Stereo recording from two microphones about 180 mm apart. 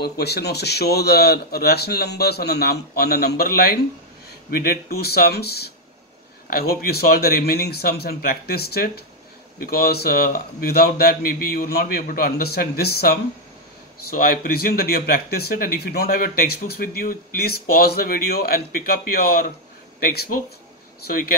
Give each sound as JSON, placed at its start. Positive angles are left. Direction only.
{"t": 0.0, "sound": "speech", "side_deg": 65}